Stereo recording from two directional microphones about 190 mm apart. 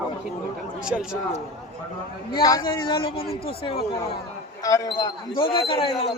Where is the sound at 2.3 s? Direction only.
20° left (ahead or behind).